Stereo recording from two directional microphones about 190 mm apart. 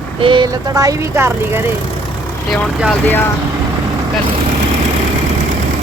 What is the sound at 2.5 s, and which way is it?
Speech, 5° left (ahead or behind).